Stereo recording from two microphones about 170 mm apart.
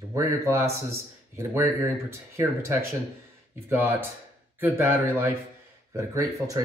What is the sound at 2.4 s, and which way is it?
Speech, 15° right (ahead or behind).